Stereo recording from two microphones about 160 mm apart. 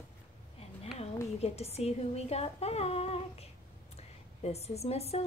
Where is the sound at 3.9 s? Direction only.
40° left (ahead or behind).